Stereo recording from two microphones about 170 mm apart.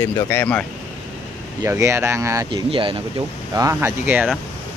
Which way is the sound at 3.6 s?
20° right (ahead or behind).